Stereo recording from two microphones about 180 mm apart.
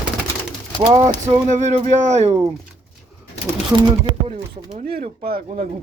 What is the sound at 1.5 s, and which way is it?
Speech, 40° right (ahead or behind).